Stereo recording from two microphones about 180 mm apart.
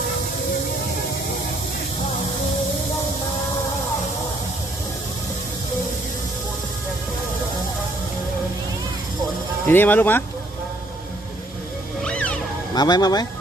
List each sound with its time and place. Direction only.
9.6 s speech: 10° left (ahead or behind)
12.0 s music: 5° left (ahead or behind)
12.7 s speech: 25° left (ahead or behind)